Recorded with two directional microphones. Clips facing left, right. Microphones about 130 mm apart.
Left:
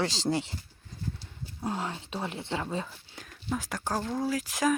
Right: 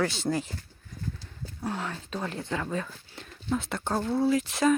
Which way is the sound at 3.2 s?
5° left (ahead or behind).